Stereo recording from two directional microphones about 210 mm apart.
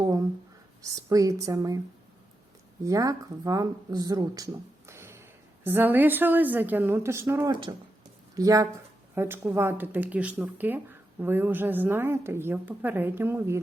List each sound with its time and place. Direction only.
0.0 s a sound: 15° right (ahead or behind)
0.8 s a woman's voice: 15° right (ahead or behind)
2.8 s a woman's voice: 15° right (ahead or behind)